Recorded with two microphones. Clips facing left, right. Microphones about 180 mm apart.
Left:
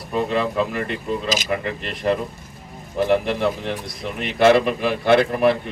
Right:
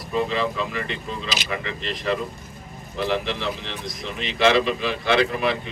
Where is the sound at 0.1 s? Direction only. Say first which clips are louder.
Left 2 dB; 55° left (ahead or behind).